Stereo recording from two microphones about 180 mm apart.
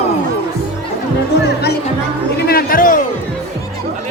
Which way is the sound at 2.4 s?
60° left (ahead or behind).